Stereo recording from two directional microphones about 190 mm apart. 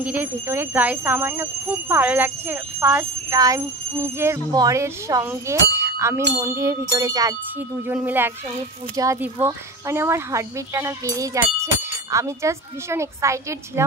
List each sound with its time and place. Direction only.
0.0 s speech: 10° right (ahead or behind)